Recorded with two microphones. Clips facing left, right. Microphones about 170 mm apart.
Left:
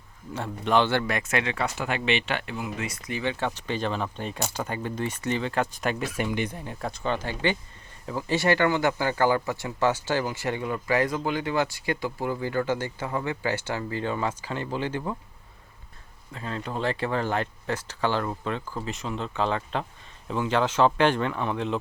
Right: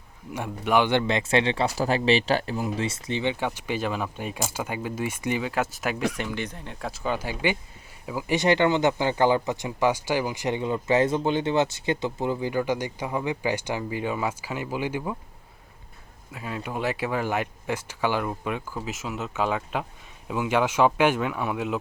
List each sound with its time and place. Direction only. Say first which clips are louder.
0.3 s speech: even; 10° right (ahead or behind)
6.1 s speech: left 3 dB; 10° left (ahead or behind); by 15.1 s 10° right (ahead or behind)
16.3 s speech: even; 10° right (ahead or behind)